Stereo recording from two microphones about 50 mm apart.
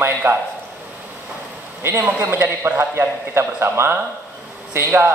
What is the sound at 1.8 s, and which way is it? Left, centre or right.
Speech, right.